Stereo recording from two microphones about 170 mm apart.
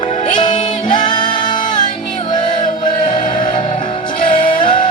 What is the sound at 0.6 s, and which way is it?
Singing, 25° left (ahead or behind).